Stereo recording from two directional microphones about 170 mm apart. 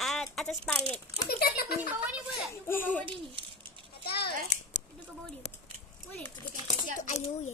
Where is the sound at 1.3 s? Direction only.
65° left (ahead or behind).